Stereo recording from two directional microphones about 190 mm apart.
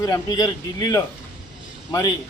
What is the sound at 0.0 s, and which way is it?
A man's voice, 20° left (ahead or behind).